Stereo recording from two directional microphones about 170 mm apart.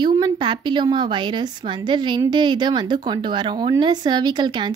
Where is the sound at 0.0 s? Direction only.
25° right (ahead or behind).